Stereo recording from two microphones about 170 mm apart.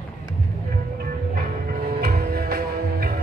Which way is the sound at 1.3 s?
65° right (ahead or behind).